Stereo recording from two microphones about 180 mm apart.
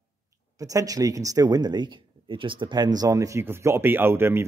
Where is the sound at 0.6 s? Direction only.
20° right (ahead or behind).